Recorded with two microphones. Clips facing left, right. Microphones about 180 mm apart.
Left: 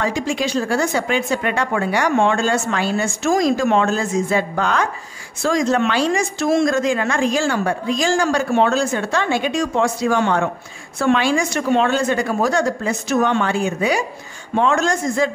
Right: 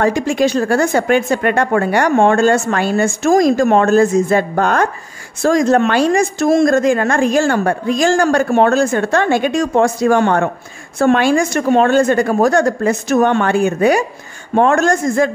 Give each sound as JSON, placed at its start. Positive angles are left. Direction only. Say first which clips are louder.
{"t": 0.0, "sound": "speech", "louder": "right 7 dB", "side_deg": -50}